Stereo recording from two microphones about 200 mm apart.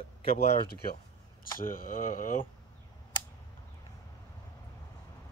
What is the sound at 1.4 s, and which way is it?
Speech, 45° left (ahead or behind).